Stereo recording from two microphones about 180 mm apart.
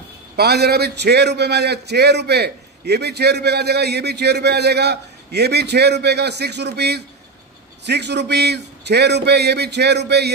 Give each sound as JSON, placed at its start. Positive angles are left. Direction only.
{"t": 0.4, "sound": "a man's voice", "side_deg": -60}